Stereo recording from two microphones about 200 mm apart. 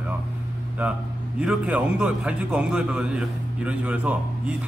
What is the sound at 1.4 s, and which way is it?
A man's voice, 5° right (ahead or behind).